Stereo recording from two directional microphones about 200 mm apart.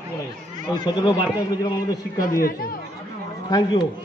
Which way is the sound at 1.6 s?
20° left (ahead or behind).